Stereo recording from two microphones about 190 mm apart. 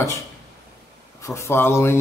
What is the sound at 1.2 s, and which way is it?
Speech, 15° left (ahead or behind).